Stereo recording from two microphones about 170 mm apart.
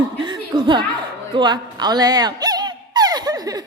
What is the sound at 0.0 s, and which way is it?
Chuckle, 25° right (ahead or behind).